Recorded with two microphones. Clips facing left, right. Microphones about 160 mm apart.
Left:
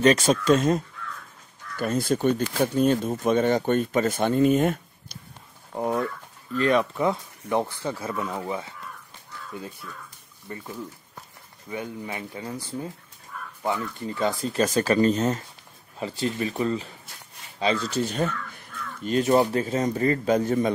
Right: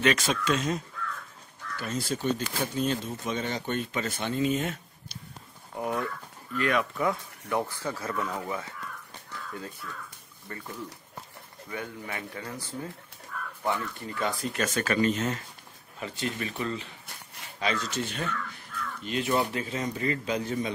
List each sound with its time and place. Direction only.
0.0 s speech: 40° left (ahead or behind)
5.8 s speech: 30° left (ahead or behind); by 10.6 s 15° left (ahead or behind)
11.7 s speech: 20° left (ahead or behind)
13.7 s speech: 25° left (ahead or behind); by 20.7 s 45° left (ahead or behind)